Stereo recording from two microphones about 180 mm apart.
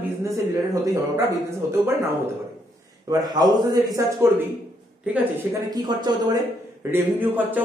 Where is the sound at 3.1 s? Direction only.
20° right (ahead or behind).